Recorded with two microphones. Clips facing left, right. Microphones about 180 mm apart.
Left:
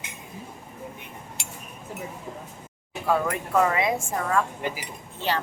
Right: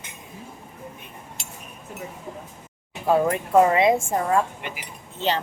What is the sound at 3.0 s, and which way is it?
Speech, 25° right (ahead or behind).